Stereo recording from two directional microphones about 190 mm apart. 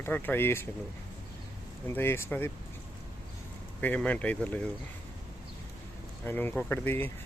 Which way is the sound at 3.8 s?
10° left (ahead or behind).